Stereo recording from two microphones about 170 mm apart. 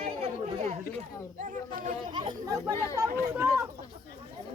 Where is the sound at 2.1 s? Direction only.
30° right (ahead or behind).